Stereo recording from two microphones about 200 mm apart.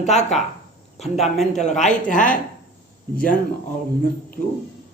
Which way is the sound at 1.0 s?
Centre (ahead or behind).